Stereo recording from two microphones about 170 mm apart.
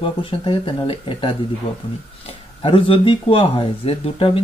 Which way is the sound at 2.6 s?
30° left (ahead or behind).